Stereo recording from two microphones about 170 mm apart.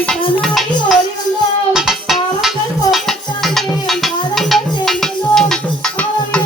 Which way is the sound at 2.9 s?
Centre (ahead or behind).